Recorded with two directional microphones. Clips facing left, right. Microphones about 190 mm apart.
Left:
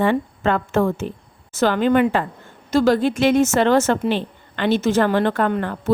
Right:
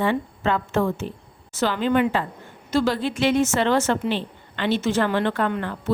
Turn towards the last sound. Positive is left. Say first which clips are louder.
# left 4 dB
turn(degrees=45)  # may be behind; listen again after turning